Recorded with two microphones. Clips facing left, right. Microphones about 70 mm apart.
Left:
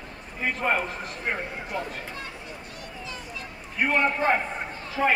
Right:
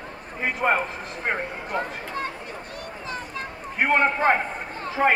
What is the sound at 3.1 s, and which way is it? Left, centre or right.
Children playing, right.